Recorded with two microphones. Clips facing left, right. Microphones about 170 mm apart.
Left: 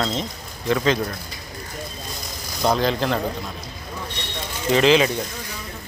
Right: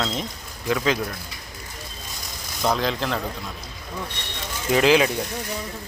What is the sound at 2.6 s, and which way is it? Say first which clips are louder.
Speech: left 3 dB; centre (ahead or behind).